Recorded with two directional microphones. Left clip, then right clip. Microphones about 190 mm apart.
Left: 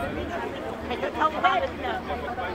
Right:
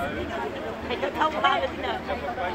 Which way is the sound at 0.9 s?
55° right (ahead or behind).